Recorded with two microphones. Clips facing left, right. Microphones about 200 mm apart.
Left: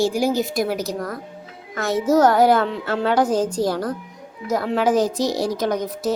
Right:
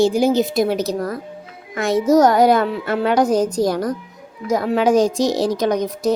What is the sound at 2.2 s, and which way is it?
A child's voice, 15° right (ahead or behind).